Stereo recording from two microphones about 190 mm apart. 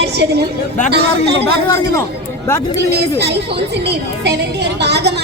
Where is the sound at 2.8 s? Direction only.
60° right (ahead or behind).